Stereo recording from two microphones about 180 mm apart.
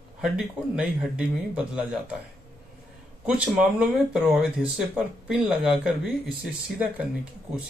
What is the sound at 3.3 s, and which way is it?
Speech, 5° right (ahead or behind).